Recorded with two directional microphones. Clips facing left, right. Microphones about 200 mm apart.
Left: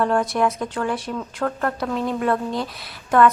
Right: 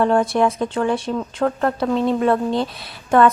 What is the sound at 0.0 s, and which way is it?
A woman's voice, 25° right (ahead or behind).